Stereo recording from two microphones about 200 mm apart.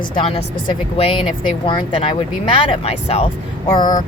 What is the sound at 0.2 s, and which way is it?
Speech, 30° left (ahead or behind).